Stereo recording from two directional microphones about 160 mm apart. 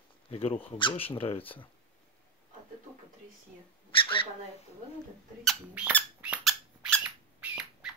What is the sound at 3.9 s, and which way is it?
Dog, 35° left (ahead or behind).